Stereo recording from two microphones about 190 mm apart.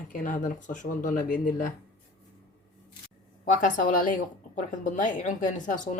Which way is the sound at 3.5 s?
40° left (ahead or behind).